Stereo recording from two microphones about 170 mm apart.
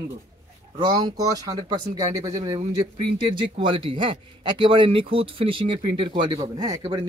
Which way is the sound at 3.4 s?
30° right (ahead or behind).